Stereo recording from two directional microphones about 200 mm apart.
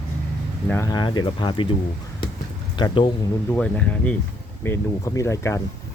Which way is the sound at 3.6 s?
5° left (ahead or behind).